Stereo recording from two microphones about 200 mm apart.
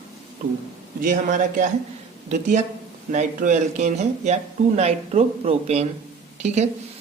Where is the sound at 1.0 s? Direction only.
40° right (ahead or behind).